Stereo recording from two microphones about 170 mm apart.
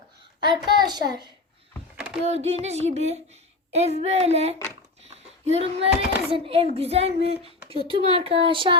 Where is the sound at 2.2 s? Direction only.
40° right (ahead or behind).